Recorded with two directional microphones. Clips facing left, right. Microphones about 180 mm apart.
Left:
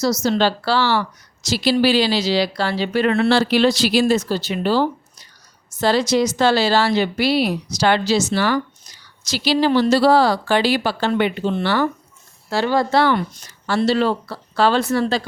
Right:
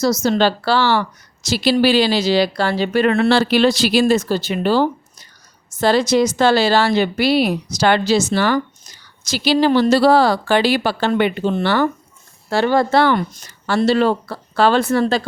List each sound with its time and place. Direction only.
0.0 s speech: 50° right (ahead or behind)